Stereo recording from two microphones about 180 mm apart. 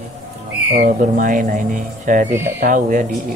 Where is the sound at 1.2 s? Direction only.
45° right (ahead or behind).